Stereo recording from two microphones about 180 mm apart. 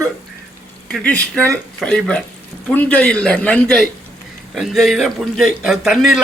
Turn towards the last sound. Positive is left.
turn(degrees=0)  # may be behind; listen again after turning